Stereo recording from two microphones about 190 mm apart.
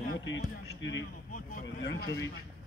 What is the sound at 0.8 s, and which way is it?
Speech, 75° left (ahead or behind).